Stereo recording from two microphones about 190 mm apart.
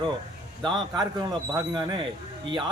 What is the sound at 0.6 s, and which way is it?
Speech, 25° right (ahead or behind).